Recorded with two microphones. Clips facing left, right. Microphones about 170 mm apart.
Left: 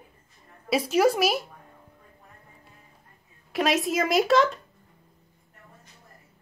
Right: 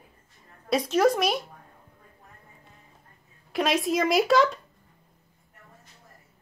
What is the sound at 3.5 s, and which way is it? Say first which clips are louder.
Speech: even; centre (ahead or behind).